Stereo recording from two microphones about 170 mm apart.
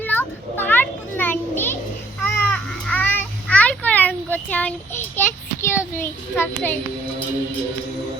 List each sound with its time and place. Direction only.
0.0 s children playing: 10° left (ahead or behind)
2.2 s a sound: 10° left (ahead or behind)
5.6 s a child's voice: 15° left (ahead or behind)